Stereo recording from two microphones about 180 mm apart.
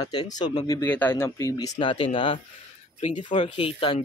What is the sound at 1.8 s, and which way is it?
Speech, 30° left (ahead or behind).